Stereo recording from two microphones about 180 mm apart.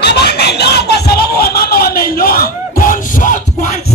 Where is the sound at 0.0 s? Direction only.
70° left (ahead or behind); by 3.8 s 40° left (ahead or behind).